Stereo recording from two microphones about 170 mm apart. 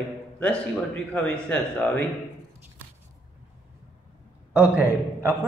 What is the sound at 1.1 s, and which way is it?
A man's voice, 5° left (ahead or behind).